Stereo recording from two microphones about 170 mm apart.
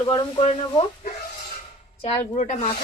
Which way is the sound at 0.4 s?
45° left (ahead or behind).